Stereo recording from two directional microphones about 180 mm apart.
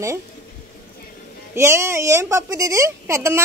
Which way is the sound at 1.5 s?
15° right (ahead or behind).